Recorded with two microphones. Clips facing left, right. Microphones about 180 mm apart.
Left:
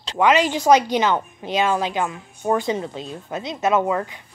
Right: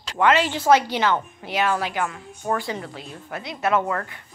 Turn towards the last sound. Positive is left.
turn(degrees=15)  # may be behind; listen again after turning